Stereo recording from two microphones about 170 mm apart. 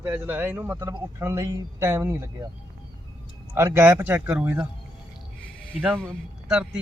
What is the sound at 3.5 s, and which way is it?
Speech, 15° right (ahead or behind).